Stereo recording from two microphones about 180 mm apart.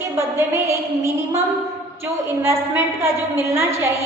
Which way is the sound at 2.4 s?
15° right (ahead or behind).